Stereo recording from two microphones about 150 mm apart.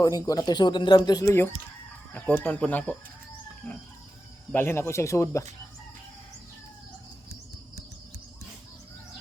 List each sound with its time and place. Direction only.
0.0 s speech: 25° left (ahead or behind); by 2.9 s 10° left (ahead or behind)
3.6 s a sound: 5° left (ahead or behind)
4.5 s speech: 15° left (ahead or behind)